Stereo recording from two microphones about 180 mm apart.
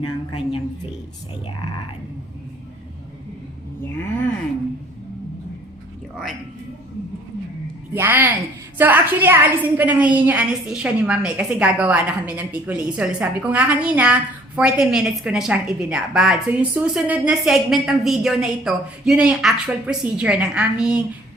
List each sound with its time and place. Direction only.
0.0 s speech: 30° left (ahead or behind)
7.9 s a woman's voice: 10° right (ahead or behind)